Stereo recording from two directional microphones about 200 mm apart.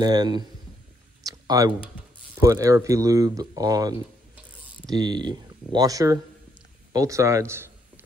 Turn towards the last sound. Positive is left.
turn(degrees=-15)  # may be behind; listen again after turning